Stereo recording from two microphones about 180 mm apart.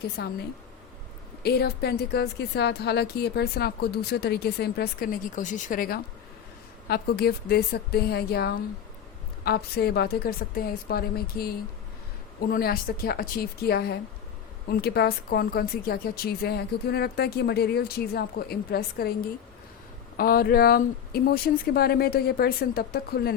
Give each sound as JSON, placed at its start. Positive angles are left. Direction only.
{"t": 0.2, "sound": "a woman's voice", "side_deg": 60}
{"t": 1.4, "sound": "a woman's voice", "side_deg": 65}
{"t": 20.1, "sound": "a woman's voice", "side_deg": 55}